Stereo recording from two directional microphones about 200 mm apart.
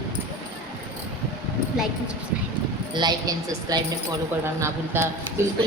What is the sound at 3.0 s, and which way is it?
A woman's voice, 20° right (ahead or behind).